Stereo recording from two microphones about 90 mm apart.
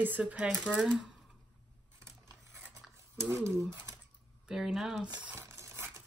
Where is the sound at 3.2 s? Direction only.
30° right (ahead or behind).